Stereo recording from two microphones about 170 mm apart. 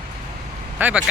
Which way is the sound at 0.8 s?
10° right (ahead or behind).